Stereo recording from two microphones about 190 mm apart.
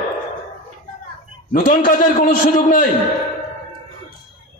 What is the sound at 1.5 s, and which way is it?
A man's voice, 45° left (ahead or behind).